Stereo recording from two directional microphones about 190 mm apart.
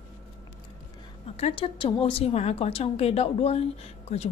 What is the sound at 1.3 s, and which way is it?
A woman's voice, 30° left (ahead or behind).